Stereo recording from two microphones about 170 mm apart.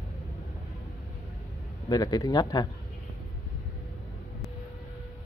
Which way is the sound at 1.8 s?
20° left (ahead or behind).